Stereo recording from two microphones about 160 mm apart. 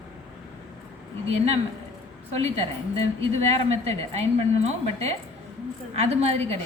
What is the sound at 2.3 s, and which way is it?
A woman's voice, 40° right (ahead or behind).